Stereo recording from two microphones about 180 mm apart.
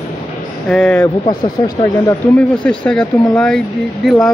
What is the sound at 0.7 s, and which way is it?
Speech, 5° left (ahead or behind).